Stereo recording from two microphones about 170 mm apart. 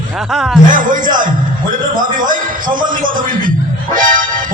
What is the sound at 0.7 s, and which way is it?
A man's voice, 50° right (ahead or behind).